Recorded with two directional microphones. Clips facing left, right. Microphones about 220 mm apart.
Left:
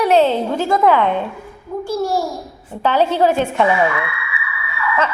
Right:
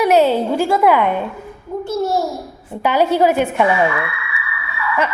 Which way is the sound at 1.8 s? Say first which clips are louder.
Right 1 dB; 20° right (ahead or behind).